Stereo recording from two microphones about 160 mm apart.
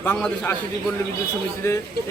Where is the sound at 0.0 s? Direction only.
10° left (ahead or behind).